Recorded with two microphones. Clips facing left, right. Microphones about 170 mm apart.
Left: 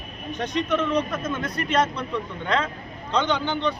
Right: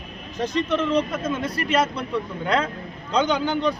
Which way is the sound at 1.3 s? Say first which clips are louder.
Right 1 dB; 5° right (ahead or behind).